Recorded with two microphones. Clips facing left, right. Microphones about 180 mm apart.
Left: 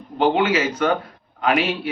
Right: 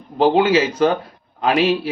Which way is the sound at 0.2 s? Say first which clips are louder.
Right 4 dB; 35° right (ahead or behind).